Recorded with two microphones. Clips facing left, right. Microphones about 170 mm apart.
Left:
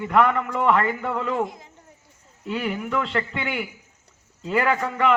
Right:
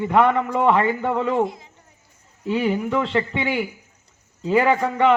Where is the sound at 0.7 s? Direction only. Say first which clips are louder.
Right 3 dB; 5° right (ahead or behind).